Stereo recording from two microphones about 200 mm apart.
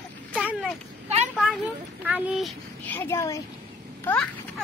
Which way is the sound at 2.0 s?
5° right (ahead or behind).